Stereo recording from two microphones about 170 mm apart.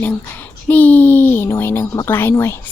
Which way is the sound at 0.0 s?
10° left (ahead or behind).